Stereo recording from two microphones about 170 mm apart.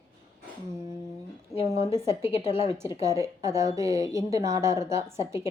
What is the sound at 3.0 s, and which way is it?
A woman's voice, 20° right (ahead or behind).